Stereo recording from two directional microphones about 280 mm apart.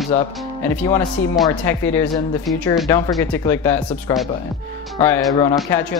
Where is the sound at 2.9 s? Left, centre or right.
Centre.